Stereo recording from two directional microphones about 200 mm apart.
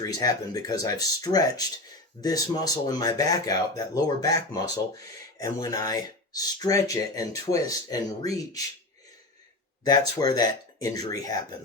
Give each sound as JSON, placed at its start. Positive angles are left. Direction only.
{"t": 0.0, "sound": "speech", "side_deg": 20}
{"t": 9.8, "sound": "speech", "side_deg": 20}